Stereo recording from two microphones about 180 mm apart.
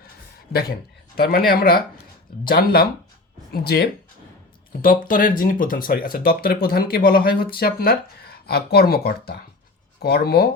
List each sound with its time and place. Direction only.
1.1 s speech: 55° left (ahead or behind)
4.8 s speech: 50° left (ahead or behind)